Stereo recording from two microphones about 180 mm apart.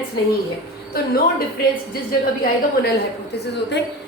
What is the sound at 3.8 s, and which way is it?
Speech, 70° left (ahead or behind).